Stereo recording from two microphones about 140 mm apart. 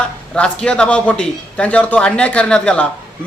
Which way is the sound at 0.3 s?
5° left (ahead or behind).